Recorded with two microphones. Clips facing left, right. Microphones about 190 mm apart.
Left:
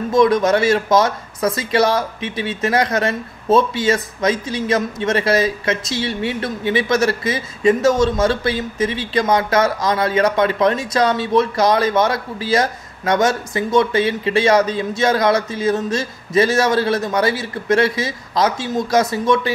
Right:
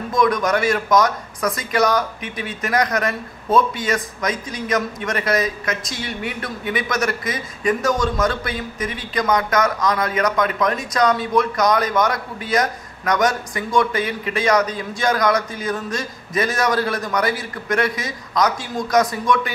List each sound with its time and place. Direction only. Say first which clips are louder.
0.1 s speech: left 4 dB; 25° left (ahead or behind)